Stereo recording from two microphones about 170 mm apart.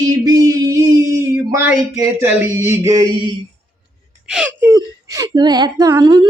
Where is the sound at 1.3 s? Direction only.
10° right (ahead or behind).